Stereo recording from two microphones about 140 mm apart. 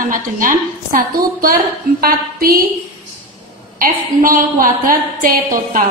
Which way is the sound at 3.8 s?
85° right.